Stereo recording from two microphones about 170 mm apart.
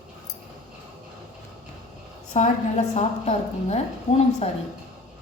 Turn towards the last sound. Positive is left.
turn(degrees=40)  # may be behind; listen again after turning